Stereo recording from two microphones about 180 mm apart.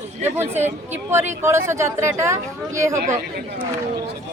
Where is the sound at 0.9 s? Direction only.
15° right (ahead or behind).